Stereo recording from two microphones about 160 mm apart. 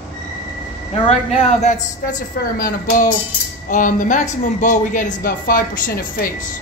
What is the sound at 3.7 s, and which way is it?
A woman's voice, 55° left (ahead or behind).